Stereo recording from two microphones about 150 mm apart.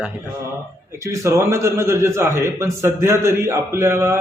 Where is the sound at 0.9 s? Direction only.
20° right (ahead or behind).